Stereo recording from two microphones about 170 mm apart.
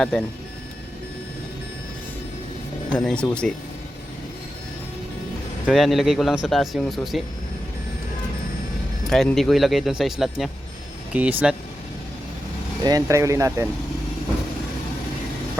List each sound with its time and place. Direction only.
0.0 s speech: 5° left (ahead or behind)
2.9 s speech: 5° left (ahead or behind)
5.6 s speech: centre (ahead or behind)
9.0 s speech: centre (ahead or behind)
12.8 s speech: 20° right (ahead or behind)